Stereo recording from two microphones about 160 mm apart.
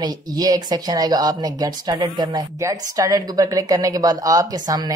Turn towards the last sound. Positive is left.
turn(degrees=-25)  # may be behind; listen again after turning